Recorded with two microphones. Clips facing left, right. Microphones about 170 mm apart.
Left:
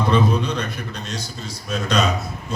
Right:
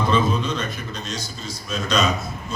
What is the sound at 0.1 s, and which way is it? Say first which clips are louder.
A man's voice: left 3 dB; 65° left (ahead or behind).